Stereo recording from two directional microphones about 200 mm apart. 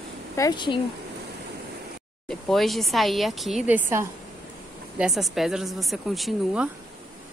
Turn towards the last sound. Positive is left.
turn(degrees=0)  # may be behind; listen again after turning